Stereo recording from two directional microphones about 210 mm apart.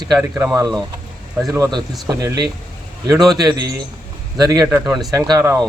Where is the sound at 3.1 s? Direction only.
Centre (ahead or behind).